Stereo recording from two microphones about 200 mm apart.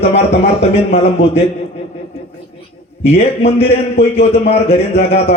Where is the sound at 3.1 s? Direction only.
30° left (ahead or behind).